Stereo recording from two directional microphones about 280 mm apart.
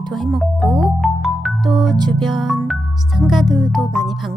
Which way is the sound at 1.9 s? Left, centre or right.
Centre.